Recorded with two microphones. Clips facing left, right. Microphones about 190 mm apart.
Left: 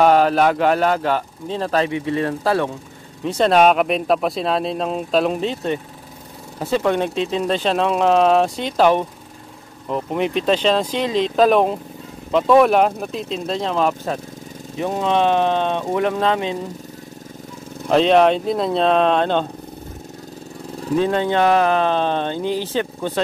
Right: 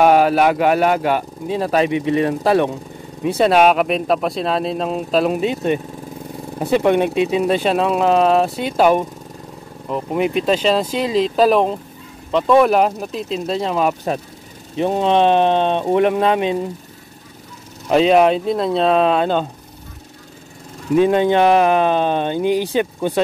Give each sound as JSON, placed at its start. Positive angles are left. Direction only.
{"t": 0.0, "sound": "speech", "side_deg": -10}
{"t": 3.3, "sound": "speech", "side_deg": -5}
{"t": 14.8, "sound": "speech", "side_deg": -25}
{"t": 17.8, "sound": "speech", "side_deg": -5}
{"t": 20.9, "sound": "speech", "side_deg": -15}